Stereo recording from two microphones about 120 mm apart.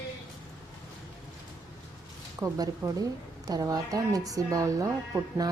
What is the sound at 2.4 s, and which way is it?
Speech, 25° right (ahead or behind).